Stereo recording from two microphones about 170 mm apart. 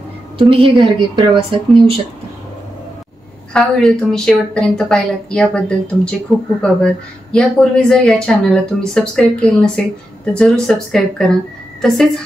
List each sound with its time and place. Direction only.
0.4 s a woman's voice: 30° right (ahead or behind)
3.5 s speech: 5° left (ahead or behind)